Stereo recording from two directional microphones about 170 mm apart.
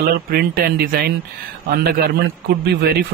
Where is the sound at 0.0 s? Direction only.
65° right (ahead or behind).